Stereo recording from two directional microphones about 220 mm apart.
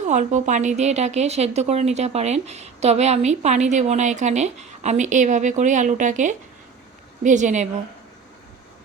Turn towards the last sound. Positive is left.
turn(degrees=-35)  # may be behind; listen again after turning